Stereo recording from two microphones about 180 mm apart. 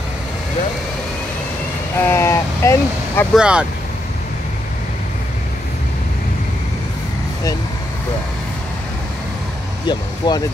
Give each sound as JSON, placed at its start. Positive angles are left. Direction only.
{"t": 2.0, "sound": "vehicle", "side_deg": 15}
{"t": 3.3, "sound": "speech", "side_deg": -5}
{"t": 9.8, "sound": "speech", "side_deg": 25}